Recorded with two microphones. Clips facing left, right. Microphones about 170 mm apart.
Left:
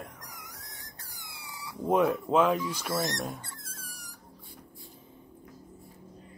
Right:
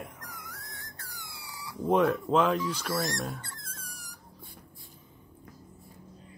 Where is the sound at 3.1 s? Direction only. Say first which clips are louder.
Even; 15° left (ahead or behind).